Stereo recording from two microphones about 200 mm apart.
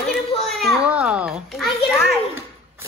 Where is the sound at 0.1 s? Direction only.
Centre (ahead or behind).